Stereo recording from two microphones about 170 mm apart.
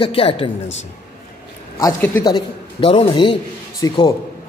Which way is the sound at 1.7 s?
15° left (ahead or behind).